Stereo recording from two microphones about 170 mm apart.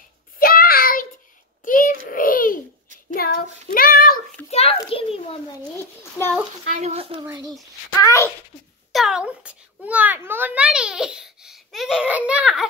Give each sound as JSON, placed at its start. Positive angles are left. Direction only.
{"t": 0.4, "sound": "a sound", "side_deg": 60}
{"t": 2.0, "sound": "babbling", "side_deg": 55}
{"t": 3.2, "sound": "child singing", "side_deg": 60}
{"t": 4.5, "sound": "a sound", "side_deg": 35}
{"t": 6.2, "sound": "a child's voice", "side_deg": 15}
{"t": 6.8, "sound": "a woman's voice", "side_deg": -35}
{"t": 8.0, "sound": "a child's voice", "side_deg": 15}
{"t": 8.9, "sound": "a child's voice", "side_deg": -5}